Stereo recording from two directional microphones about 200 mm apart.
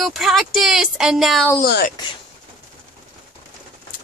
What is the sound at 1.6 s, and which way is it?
Speech, 50° left (ahead or behind).